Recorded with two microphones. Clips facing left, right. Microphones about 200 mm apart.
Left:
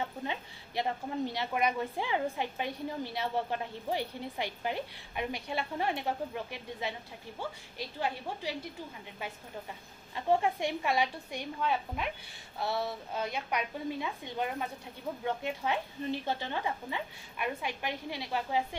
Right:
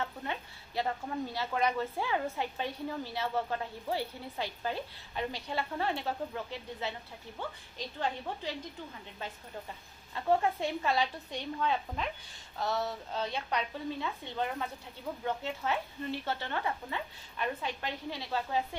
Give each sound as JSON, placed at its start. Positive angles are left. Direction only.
{"t": 0.0, "sound": "a woman's voice", "side_deg": 15}
{"t": 10.1, "sound": "a woman's voice", "side_deg": 15}